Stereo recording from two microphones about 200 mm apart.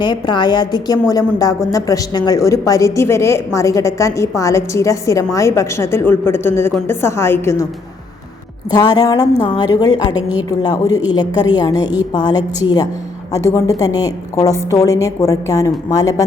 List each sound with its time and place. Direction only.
0.0 s a woman's voice: 20° left (ahead or behind)
8.7 s a woman's voice: 20° left (ahead or behind)